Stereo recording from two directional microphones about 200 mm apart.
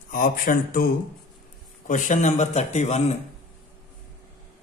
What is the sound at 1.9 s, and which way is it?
Speech, 40° left (ahead or behind).